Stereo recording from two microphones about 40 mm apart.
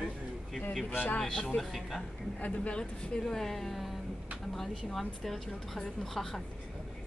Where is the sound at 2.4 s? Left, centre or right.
Left.